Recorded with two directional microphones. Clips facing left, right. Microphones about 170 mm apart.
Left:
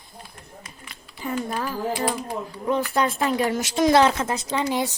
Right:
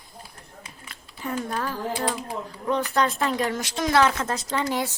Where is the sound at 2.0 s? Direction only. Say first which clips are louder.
Left 2 dB; 20° left (ahead or behind).